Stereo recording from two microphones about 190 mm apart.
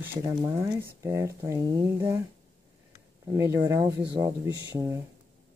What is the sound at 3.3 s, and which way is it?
Speech, 15° right (ahead or behind).